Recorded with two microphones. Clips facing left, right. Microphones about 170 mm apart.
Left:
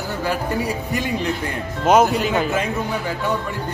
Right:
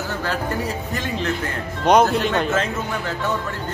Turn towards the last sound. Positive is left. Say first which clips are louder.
# left 2 dB
turn(degrees=10)  # may be behind; listen again after turning